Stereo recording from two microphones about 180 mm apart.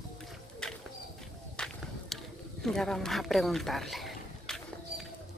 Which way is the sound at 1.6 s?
5° left (ahead or behind).